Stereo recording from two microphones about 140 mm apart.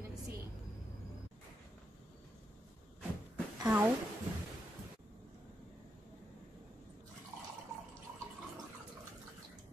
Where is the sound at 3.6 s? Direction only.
15° right (ahead or behind).